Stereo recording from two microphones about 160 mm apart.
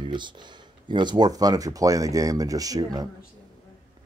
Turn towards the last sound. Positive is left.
turn(degrees=-25)  # may be behind; listen again after turning